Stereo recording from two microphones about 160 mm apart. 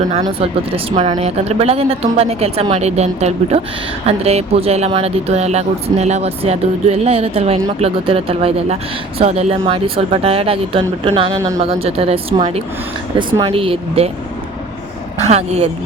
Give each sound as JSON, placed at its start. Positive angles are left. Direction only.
{"t": 0.3, "sound": "speech", "side_deg": -35}
{"t": 11.3, "sound": "speech", "side_deg": -20}
{"t": 11.6, "sound": "speech", "side_deg": -40}
{"t": 15.2, "sound": "a woman's voice", "side_deg": -40}